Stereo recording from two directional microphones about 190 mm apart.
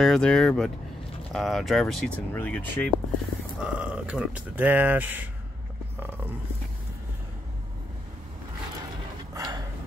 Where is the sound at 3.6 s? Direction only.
5° right (ahead or behind).